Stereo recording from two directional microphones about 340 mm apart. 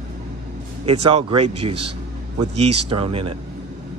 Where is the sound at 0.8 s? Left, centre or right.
Right.